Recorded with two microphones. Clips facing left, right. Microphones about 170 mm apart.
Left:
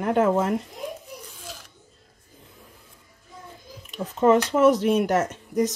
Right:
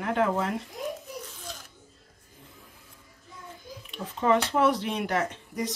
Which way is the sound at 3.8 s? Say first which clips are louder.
Left 6 dB; 45° left (ahead or behind).